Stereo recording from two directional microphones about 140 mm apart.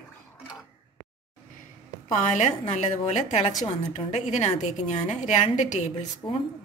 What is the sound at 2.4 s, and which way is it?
A woman's voice, 60° left (ahead or behind).